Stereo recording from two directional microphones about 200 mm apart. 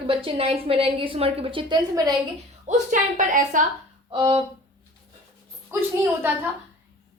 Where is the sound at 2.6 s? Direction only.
40° right (ahead or behind).